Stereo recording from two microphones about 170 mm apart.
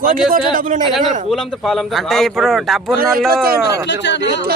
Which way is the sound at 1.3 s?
Centre (ahead or behind).